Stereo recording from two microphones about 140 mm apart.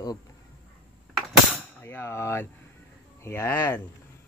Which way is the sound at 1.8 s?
20° left (ahead or behind).